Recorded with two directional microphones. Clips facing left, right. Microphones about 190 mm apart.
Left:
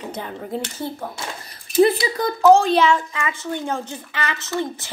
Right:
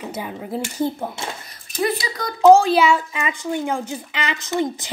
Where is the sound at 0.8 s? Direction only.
20° right (ahead or behind).